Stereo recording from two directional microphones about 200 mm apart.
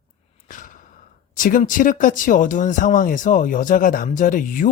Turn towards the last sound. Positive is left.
turn(degrees=40)  # may be behind; listen again after turning